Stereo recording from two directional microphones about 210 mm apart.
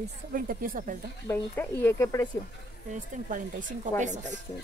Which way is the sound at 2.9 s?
40° right (ahead or behind).